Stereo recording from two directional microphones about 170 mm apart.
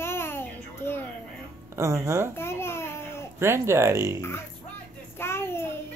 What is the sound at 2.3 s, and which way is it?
Babbling, 15° left (ahead or behind).